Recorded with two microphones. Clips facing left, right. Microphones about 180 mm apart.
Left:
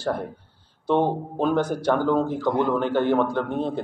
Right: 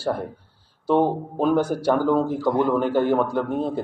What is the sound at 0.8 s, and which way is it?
A man's voice, 5° right (ahead or behind).